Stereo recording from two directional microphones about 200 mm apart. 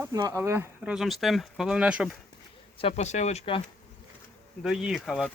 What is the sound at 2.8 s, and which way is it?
Speech, 35° left (ahead or behind).